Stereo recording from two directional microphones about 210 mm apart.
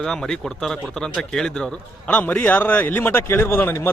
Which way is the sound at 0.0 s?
5° left (ahead or behind).